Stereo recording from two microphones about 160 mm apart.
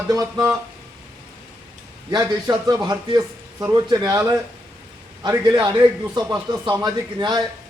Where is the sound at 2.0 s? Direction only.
25° right (ahead or behind).